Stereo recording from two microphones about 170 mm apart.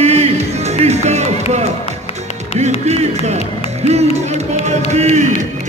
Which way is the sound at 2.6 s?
40° right (ahead or behind).